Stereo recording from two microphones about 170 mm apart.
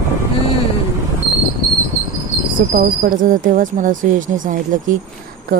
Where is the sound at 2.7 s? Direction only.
50° right (ahead or behind).